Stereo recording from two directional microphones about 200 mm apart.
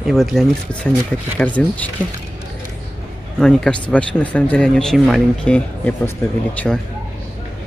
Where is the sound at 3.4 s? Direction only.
5° left (ahead or behind).